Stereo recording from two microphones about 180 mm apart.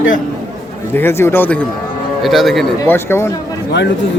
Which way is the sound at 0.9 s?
10° left (ahead or behind).